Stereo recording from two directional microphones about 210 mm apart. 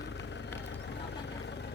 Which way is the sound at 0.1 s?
55° left (ahead or behind).